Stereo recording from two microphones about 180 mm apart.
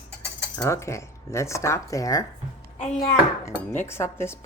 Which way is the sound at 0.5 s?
15° left (ahead or behind).